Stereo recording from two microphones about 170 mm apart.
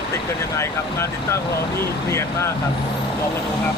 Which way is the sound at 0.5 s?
15° left (ahead or behind).